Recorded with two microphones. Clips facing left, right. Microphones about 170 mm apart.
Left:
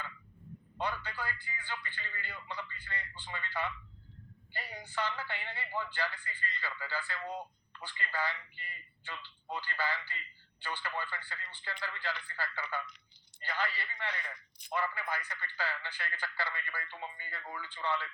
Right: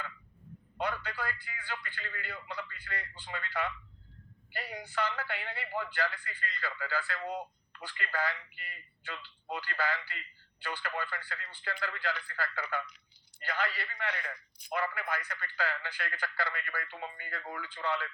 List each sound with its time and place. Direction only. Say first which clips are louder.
0.8 s a man's voice: right 2 dB; 70° right (ahead or behind)